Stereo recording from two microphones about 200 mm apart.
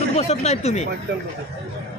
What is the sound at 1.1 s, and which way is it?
Speech, 55° right (ahead or behind).